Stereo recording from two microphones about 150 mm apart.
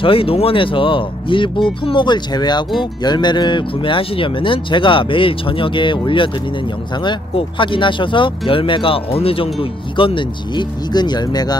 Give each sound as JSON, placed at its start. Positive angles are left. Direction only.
{"t": 0.0, "sound": "speech", "side_deg": 40}